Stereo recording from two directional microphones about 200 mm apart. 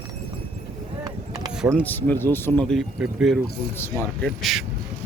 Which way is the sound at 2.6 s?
Centre (ahead or behind).